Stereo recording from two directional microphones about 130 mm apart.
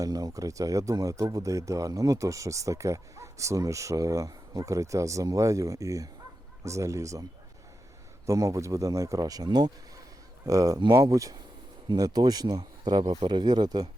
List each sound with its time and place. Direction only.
0.0 s speech: 30° right (ahead or behind)
8.3 s speech: 25° right (ahead or behind)